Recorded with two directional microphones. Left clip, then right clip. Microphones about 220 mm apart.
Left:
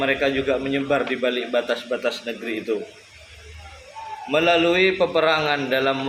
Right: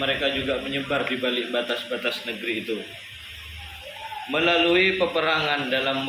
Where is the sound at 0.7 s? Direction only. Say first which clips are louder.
Left 4 dB; 15° left (ahead or behind).